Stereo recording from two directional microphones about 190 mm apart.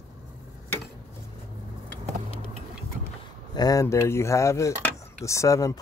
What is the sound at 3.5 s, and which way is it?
Speech, 20° left (ahead or behind).